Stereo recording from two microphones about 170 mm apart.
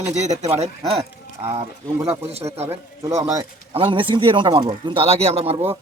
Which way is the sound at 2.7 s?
20° right (ahead or behind).